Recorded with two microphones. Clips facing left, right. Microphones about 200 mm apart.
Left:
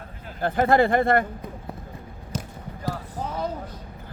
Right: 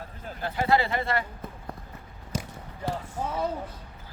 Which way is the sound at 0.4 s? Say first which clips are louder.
Left 6 dB; 50° left (ahead or behind).